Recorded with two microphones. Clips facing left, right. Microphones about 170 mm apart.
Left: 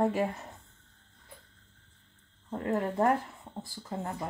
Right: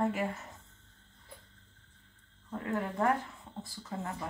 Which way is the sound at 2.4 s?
35° left (ahead or behind).